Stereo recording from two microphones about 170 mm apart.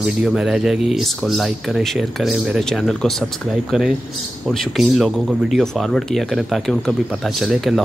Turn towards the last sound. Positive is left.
turn(degrees=0)  # may be behind; listen again after turning